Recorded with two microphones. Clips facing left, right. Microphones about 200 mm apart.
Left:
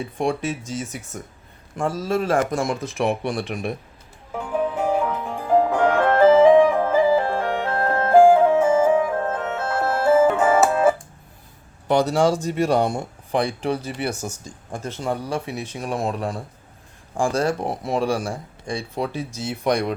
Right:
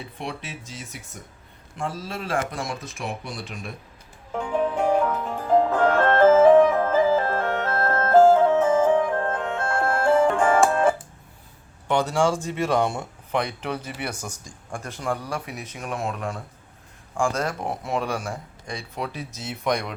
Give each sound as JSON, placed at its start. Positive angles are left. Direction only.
{"t": 0.0, "sound": "speech", "side_deg": 45}
{"t": 2.8, "sound": "speech", "side_deg": 65}
{"t": 4.3, "sound": "music", "side_deg": 5}
{"t": 11.9, "sound": "speech", "side_deg": 40}